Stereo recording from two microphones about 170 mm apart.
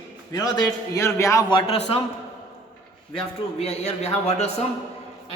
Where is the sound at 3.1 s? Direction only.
35° left (ahead or behind).